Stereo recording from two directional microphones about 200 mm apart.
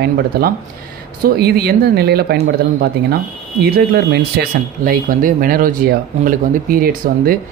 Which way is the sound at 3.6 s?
50° right (ahead or behind).